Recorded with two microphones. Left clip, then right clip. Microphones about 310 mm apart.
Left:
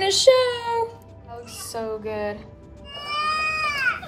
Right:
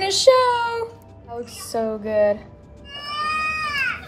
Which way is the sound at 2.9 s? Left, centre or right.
Left.